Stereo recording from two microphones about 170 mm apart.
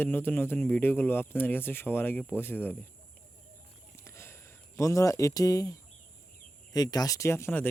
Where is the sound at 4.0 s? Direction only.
15° left (ahead or behind).